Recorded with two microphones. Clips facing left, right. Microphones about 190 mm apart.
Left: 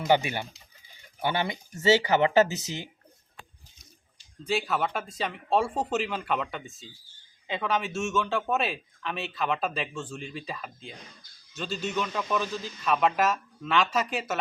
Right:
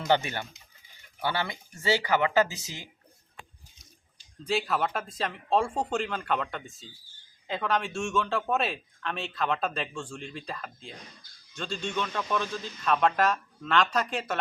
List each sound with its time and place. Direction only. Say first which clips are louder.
0.1 s speech: left 2 dB; 15° left (ahead or behind)
4.4 s a man's voice: even; centre (ahead or behind)